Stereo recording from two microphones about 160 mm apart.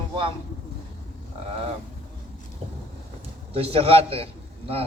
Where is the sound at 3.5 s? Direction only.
35° right (ahead or behind).